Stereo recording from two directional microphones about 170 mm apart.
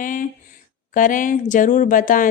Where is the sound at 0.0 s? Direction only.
50° left (ahead or behind).